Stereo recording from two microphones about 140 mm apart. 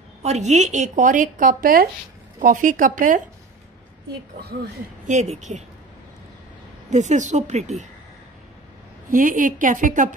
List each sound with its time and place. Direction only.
0.2 s speech: 55° right (ahead or behind); by 1.9 s 90° right
2.4 s speech: 65° right (ahead or behind)
4.4 s speech: 90° right; by 5.6 s 50° right (ahead or behind)
6.9 s speech: 60° right (ahead or behind)
9.1 s speech: 75° right (ahead or behind)